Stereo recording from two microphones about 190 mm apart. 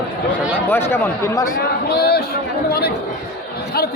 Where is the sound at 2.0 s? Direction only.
55° left (ahead or behind).